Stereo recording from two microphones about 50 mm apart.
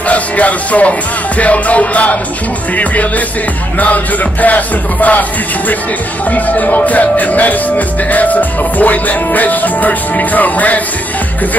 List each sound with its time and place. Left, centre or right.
0.1 s music: left
3.8 s music: left
6.3 s music: left